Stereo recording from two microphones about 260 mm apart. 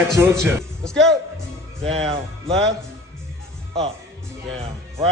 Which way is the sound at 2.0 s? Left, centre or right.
Right.